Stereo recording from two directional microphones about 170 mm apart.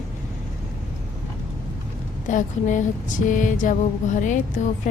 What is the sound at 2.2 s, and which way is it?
A woman's voice, 45° left (ahead or behind).